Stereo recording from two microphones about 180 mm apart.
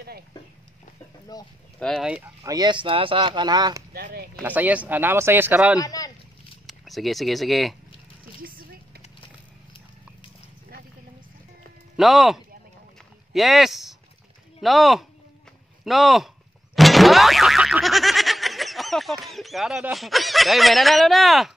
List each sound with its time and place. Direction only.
1.3 s speech: 20° left (ahead or behind)
1.8 s speech: centre (ahead or behind)
2.4 s speech: 20° right (ahead or behind)
3.9 s a sound: 60° right (ahead or behind)
4.4 s speech: 10° right (ahead or behind)
5.8 s boat: 20° left (ahead or behind)
6.6 s speech: centre (ahead or behind)
8.4 s a sound: 55° right (ahead or behind)
12.0 s speech: centre (ahead or behind)
16.7 s boing: centre (ahead or behind)